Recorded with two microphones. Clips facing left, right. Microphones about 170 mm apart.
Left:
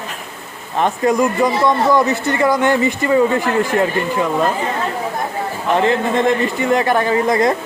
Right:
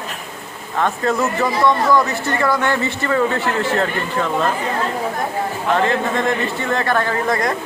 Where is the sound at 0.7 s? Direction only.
20° left (ahead or behind).